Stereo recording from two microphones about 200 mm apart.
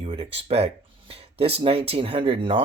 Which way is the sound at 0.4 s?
30° right (ahead or behind).